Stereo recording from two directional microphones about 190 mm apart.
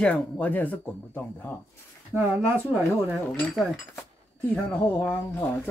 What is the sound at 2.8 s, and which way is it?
Speech, 10° right (ahead or behind).